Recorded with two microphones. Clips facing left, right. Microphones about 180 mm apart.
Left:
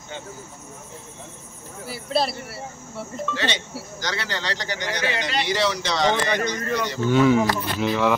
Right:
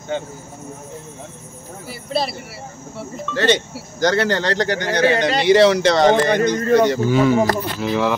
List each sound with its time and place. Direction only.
0.1 s speech: 60° right (ahead or behind)
1.9 s speech: centre (ahead or behind)
3.3 s speech: 50° right (ahead or behind)
5.4 s speech: 60° right (ahead or behind)
7.1 s speech: centre (ahead or behind)